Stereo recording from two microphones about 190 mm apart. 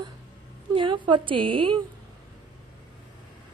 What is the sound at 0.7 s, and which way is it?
A woman's voice, 25° right (ahead or behind).